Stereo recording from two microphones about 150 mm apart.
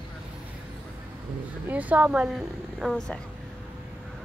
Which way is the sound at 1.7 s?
10° right (ahead or behind).